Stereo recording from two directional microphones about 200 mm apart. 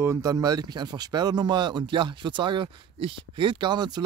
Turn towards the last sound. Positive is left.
turn(degrees=-20)  # may be behind; listen again after turning